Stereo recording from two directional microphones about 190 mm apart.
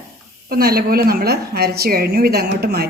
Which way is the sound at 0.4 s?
50° right (ahead or behind).